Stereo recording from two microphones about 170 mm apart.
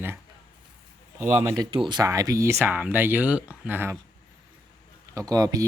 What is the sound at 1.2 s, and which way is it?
Speech, 15° right (ahead or behind).